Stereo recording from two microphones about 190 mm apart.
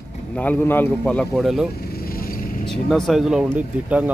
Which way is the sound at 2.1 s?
50° left (ahead or behind).